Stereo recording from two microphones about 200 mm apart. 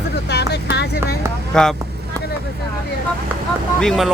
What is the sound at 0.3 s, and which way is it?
Vehicle, 55° left (ahead or behind).